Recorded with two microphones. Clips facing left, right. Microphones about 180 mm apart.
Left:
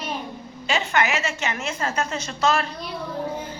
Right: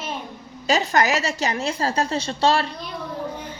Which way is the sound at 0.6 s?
40° right (ahead or behind).